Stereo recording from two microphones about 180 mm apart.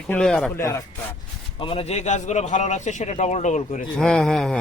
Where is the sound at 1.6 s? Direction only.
30° left (ahead or behind).